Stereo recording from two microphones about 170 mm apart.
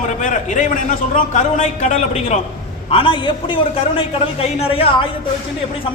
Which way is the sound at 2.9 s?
30° left (ahead or behind).